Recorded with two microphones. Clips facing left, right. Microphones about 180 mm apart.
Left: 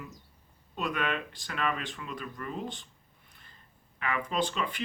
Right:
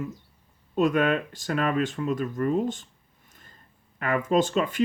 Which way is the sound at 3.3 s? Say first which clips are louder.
Right 5 dB; 45° right (ahead or behind).